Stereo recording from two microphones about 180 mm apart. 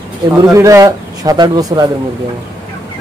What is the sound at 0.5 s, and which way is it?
Speech, 15° right (ahead or behind).